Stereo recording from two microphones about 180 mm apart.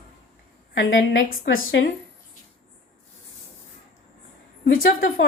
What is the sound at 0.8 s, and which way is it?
A woman's voice, 85° left.